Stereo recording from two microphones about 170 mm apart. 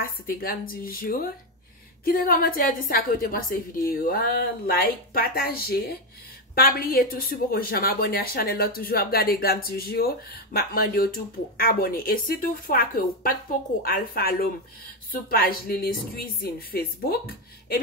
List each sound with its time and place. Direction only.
0.0 s speech: 60° left (ahead or behind)